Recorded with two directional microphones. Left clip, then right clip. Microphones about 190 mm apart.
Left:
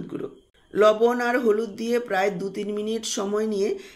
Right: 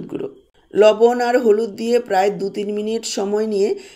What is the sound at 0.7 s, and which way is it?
Speech, 20° right (ahead or behind).